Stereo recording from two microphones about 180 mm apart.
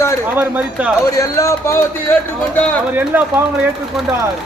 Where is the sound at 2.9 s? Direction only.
10° right (ahead or behind).